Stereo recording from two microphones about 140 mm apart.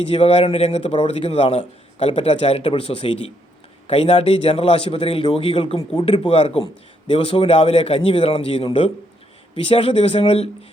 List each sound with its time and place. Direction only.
0.0 s speech: 45° left (ahead or behind)